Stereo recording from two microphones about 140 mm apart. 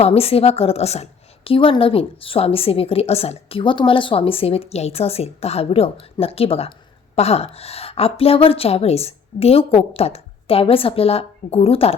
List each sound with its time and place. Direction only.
0.0 s a woman's voice: 45° left (ahead or behind)